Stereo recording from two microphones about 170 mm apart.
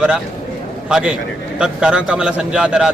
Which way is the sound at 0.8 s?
5° right (ahead or behind).